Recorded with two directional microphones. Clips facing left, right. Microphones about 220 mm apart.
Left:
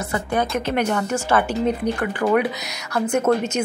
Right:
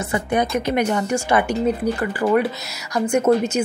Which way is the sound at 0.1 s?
15° right (ahead or behind).